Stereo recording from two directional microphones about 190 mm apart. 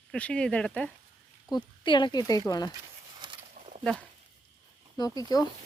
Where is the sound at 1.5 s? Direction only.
25° left (ahead or behind).